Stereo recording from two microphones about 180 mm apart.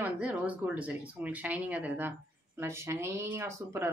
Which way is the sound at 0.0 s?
10° right (ahead or behind).